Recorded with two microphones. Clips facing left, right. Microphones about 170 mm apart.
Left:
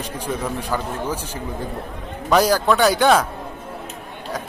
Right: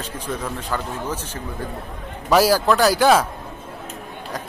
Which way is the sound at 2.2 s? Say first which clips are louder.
Even; 5° right (ahead or behind).